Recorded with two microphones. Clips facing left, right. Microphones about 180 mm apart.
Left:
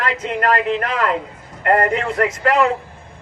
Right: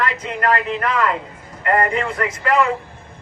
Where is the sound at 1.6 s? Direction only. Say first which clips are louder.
Left 2 dB; 45° left (ahead or behind).